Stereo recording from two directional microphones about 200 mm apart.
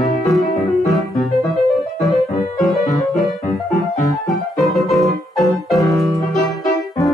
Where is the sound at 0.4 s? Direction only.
Centre (ahead or behind).